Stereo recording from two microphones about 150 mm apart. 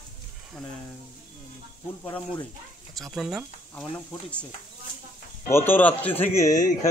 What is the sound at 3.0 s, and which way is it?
Speech, centre (ahead or behind).